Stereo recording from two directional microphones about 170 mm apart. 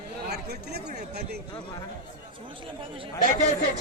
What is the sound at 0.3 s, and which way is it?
Speech, 70° right (ahead or behind).